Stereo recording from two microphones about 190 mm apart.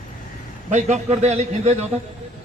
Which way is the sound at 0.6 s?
40° right (ahead or behind).